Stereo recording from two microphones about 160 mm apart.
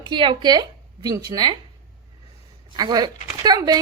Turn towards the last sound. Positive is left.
turn(degrees=-25)  # may be behind; listen again after turning